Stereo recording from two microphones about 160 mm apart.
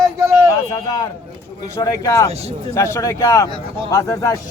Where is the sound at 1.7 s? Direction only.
20° left (ahead or behind).